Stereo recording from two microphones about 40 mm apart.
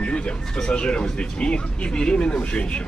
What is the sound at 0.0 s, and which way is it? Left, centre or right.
Speech, left.